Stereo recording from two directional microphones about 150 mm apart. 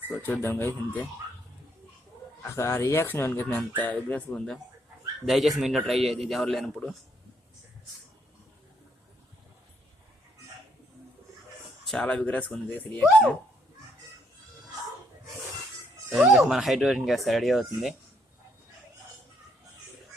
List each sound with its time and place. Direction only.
0.2 s speech: 15° left (ahead or behind)
2.4 s speech: 15° left (ahead or behind)
11.9 s speech: 5° left (ahead or behind)
16.1 s speech: centre (ahead or behind)